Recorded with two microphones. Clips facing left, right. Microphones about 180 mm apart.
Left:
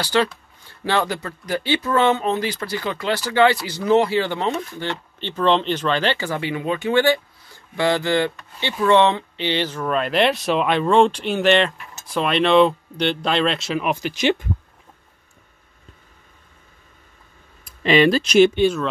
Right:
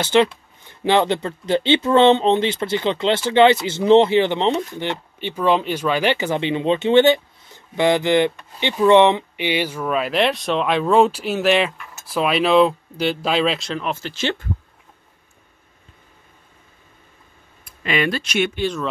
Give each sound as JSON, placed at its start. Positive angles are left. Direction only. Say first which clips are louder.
{"t": 0.0, "sound": "speech", "louder": "right 4 dB", "side_deg": -20}
{"t": 13.7, "sound": "speech", "louder": "left 3 dB", "side_deg": 15}
{"t": 17.6, "sound": "speech", "louder": "left 6 dB", "side_deg": 30}